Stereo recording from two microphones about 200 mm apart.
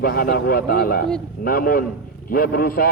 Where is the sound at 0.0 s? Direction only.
45° left (ahead or behind).